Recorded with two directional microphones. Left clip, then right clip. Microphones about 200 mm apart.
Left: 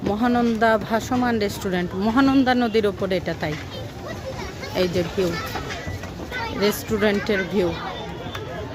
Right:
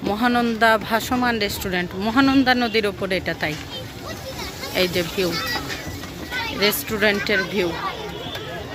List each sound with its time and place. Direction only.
0.0 s speech: 10° left (ahead or behind)
4.7 s speech: 10° left (ahead or behind)
6.6 s speech: 10° left (ahead or behind)